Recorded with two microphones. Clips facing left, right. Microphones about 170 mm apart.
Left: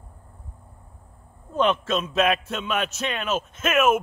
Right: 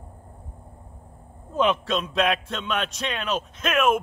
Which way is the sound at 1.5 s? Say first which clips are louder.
Even; centre (ahead or behind).